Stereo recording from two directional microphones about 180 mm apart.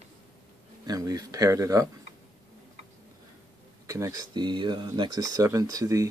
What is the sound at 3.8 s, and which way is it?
Speech, 15° right (ahead or behind).